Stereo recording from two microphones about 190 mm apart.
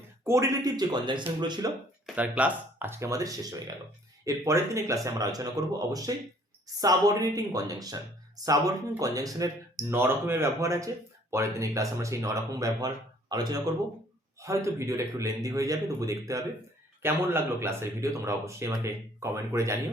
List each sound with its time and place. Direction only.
0.3 s speech: 15° right (ahead or behind)
2.1 s speech: 10° right (ahead or behind)